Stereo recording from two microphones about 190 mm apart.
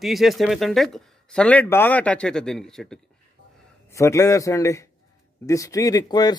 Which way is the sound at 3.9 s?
15° left (ahead or behind).